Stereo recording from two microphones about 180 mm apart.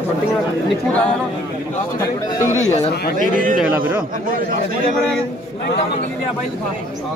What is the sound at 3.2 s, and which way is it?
Speech, 50° right (ahead or behind).